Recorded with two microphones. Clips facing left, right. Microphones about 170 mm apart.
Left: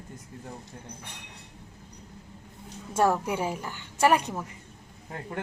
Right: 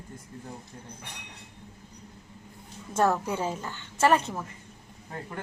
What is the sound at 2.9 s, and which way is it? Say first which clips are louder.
A woman's voice: left 1 dB; 10° left (ahead or behind).